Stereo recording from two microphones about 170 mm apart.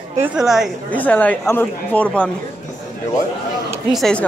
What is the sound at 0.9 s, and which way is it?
Speech, 10° left (ahead or behind).